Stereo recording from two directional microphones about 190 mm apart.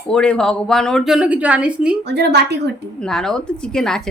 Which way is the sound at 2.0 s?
60° right (ahead or behind).